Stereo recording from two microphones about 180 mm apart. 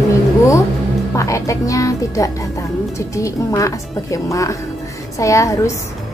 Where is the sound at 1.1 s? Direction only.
15° left (ahead or behind).